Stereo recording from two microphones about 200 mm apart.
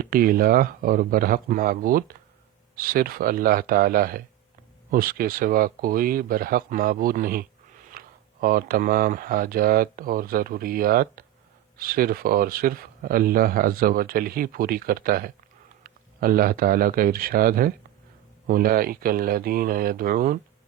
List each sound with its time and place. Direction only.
0.0 s speech: 45° right (ahead or behind)